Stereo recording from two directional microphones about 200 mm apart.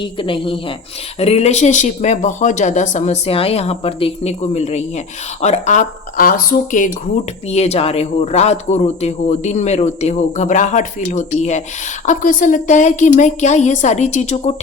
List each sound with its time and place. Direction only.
0.0 s speech: 25° left (ahead or behind)